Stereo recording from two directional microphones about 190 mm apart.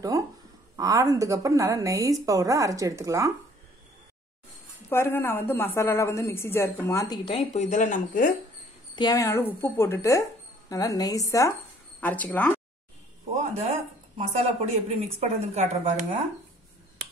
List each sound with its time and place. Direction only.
0.1 s a woman's voice: 15° right (ahead or behind)
4.8 s a woman's voice: 15° left (ahead or behind)
7.2 s speech: 35° left (ahead or behind)
8.9 s a woman's voice: 20° left (ahead or behind)
13.4 s speech: 35° right (ahead or behind)